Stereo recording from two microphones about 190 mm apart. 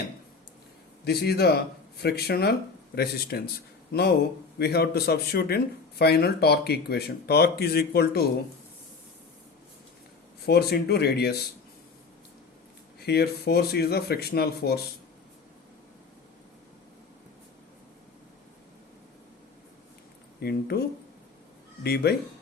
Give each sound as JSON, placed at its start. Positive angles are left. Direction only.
{"t": 1.0, "sound": "speech", "side_deg": 55}
{"t": 4.5, "sound": "speech", "side_deg": 55}
{"t": 10.4, "sound": "speech", "side_deg": 55}
{"t": 13.0, "sound": "speech", "side_deg": 55}
{"t": 20.4, "sound": "speech", "side_deg": 55}
{"t": 21.8, "sound": "speech", "side_deg": 55}